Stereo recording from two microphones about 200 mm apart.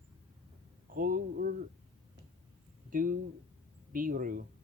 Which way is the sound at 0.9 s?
45° right (ahead or behind).